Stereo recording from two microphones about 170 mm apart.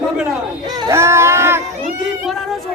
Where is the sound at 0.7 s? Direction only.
25° right (ahead or behind).